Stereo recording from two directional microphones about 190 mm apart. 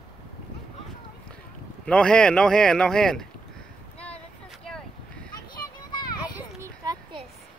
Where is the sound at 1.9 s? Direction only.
5° left (ahead or behind).